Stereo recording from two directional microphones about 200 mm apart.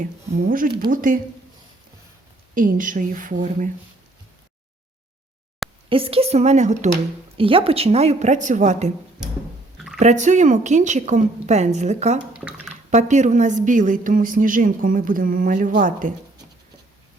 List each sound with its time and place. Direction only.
0.0 s speech: 40° right (ahead or behind)
2.6 s a woman's voice: 40° right (ahead or behind)
5.9 s a woman's voice: 30° right (ahead or behind)
10.0 s a woman's voice: 35° right (ahead or behind)